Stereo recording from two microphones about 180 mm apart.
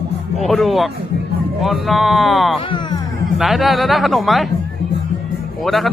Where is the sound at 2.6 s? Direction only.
25° left (ahead or behind).